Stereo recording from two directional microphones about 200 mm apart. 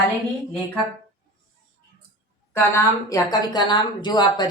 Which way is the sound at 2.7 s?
15° left (ahead or behind).